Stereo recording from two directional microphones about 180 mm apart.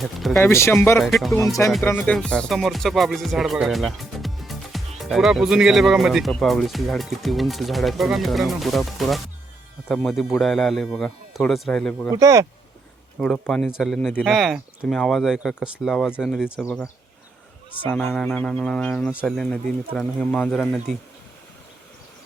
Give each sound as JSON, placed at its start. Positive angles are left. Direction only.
{"t": 0.0, "sound": "music", "side_deg": 0}
{"t": 0.3, "sound": "speech", "side_deg": 15}
{"t": 0.9, "sound": "music", "side_deg": 0}
{"t": 1.4, "sound": "speech", "side_deg": 15}
{"t": 2.0, "sound": "music", "side_deg": 0}
{"t": 12.1, "sound": "speech", "side_deg": -15}
{"t": 13.1, "sound": "music", "side_deg": 5}
{"t": 17.8, "sound": "music", "side_deg": 10}